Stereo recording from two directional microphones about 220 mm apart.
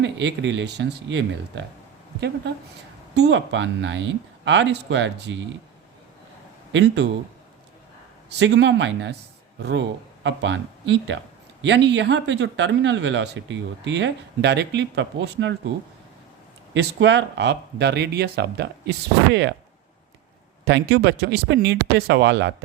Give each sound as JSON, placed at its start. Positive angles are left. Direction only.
{"t": 0.0, "sound": "speech", "side_deg": -55}
{"t": 3.2, "sound": "speech", "side_deg": -55}
{"t": 6.7, "sound": "speech", "side_deg": -50}
{"t": 8.4, "sound": "speech", "side_deg": -55}
{"t": 10.2, "sound": "speech", "side_deg": -55}
{"t": 16.7, "sound": "speech", "side_deg": -55}
{"t": 20.7, "sound": "speech", "side_deg": -50}